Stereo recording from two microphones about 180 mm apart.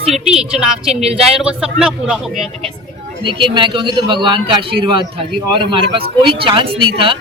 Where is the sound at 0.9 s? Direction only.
35° right (ahead or behind).